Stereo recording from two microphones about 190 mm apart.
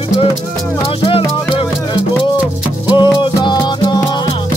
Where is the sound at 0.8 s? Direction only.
30° left (ahead or behind).